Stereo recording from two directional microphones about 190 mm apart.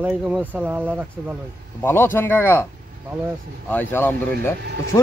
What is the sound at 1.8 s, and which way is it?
Speech, 10° left (ahead or behind).